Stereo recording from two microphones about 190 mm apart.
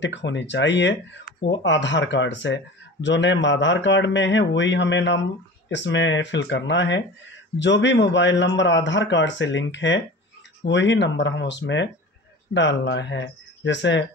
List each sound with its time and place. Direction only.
0.0 s speech: 70° left (ahead or behind)